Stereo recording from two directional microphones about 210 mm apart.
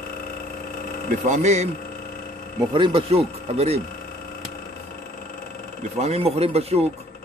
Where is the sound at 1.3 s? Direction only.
35° right (ahead or behind).